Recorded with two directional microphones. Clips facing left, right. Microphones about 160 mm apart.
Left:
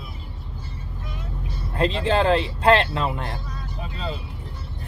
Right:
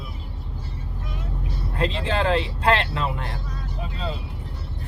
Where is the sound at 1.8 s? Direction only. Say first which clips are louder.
Left 3 dB; 35° left (ahead or behind).